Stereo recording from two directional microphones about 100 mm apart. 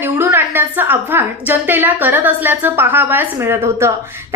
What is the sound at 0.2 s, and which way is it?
A woman's voice, 20° right (ahead or behind).